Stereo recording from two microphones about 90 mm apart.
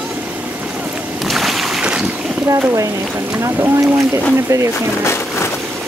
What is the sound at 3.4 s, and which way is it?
Boat, 35° right (ahead or behind).